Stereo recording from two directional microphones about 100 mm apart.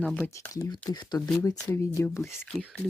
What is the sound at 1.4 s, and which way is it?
Speech, 30° left (ahead or behind).